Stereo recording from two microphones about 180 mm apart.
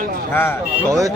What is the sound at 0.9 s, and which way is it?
Speech, 15° right (ahead or behind).